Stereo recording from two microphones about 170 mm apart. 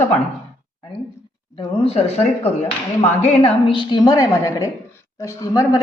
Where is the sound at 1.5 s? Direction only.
35° left (ahead or behind).